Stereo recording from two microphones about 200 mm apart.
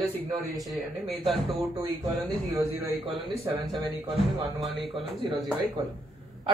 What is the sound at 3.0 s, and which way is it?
Speech, 25° right (ahead or behind).